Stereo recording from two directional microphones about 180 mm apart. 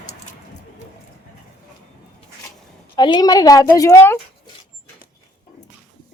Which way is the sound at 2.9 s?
25° left (ahead or behind).